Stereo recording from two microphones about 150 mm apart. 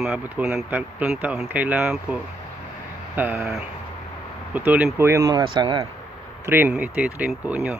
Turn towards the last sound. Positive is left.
turn(degrees=-10)  # may be behind; listen again after turning